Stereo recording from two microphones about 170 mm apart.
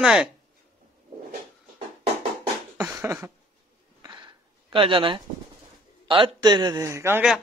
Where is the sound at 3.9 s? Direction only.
25° right (ahead or behind).